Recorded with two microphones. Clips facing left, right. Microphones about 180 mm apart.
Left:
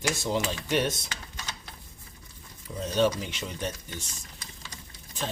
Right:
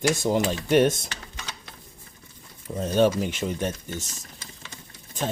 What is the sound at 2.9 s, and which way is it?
Speech, 50° right (ahead or behind).